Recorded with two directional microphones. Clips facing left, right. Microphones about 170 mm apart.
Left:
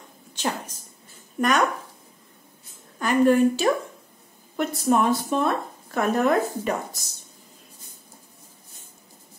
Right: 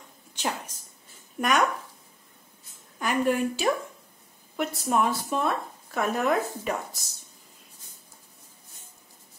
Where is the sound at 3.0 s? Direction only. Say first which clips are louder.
Left 7 dB; 10° right (ahead or behind).